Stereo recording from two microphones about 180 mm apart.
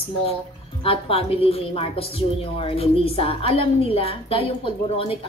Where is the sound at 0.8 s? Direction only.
30° left (ahead or behind).